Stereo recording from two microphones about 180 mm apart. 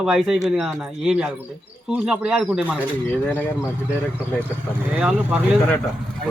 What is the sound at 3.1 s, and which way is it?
Speech, 10° left (ahead or behind).